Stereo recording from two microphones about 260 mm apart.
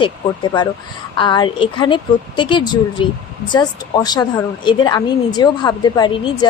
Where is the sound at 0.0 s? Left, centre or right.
Centre.